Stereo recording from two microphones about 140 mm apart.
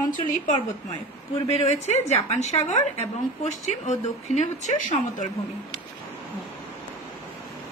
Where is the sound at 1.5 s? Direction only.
50° left (ahead or behind).